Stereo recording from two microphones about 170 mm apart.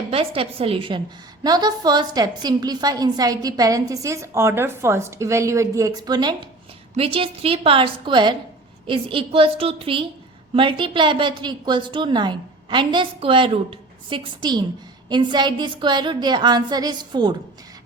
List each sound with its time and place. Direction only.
0.1 s a woman's voice: 35° right (ahead or behind)